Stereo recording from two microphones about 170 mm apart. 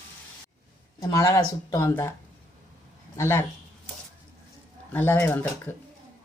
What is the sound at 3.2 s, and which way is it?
Speech, 15° left (ahead or behind).